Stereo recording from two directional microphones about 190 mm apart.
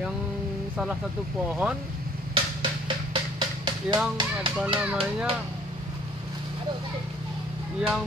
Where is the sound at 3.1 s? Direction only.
25° right (ahead or behind).